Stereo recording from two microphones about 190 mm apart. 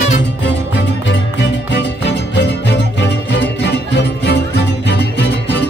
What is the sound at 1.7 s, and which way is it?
Music, 65° left (ahead or behind).